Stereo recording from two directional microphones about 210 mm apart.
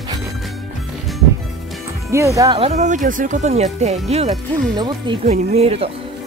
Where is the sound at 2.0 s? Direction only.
15° right (ahead or behind).